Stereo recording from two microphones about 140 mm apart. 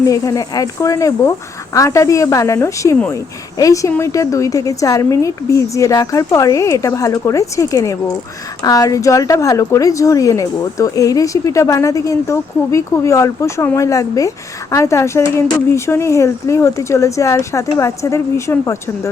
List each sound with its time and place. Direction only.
0.1 s a woman's voice: 25° left (ahead or behind)